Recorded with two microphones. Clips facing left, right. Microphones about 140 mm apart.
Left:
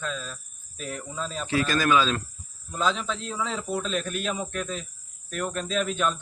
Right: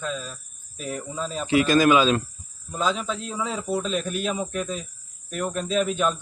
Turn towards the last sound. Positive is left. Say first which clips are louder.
# right 3 dB
turn(degrees=-5)  # may be behind; listen again after turning